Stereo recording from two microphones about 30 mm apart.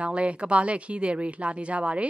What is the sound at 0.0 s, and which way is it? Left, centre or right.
Speech, right.